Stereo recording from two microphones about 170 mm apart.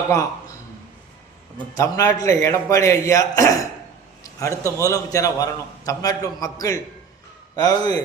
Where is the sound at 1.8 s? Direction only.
20° left (ahead or behind).